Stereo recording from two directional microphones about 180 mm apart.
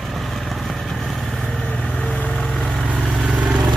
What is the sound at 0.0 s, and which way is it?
Vehicle, centre (ahead or behind).